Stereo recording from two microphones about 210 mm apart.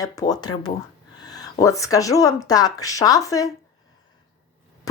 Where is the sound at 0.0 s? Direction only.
15° left (ahead or behind).